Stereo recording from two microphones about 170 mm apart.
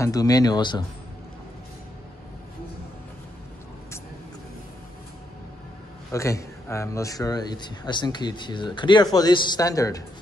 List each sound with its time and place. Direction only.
0.0 s speech: 20° left (ahead or behind)
6.1 s speech: 15° left (ahead or behind)